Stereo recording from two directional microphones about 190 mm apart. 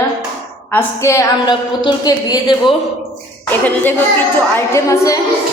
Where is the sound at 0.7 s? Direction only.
10° left (ahead or behind).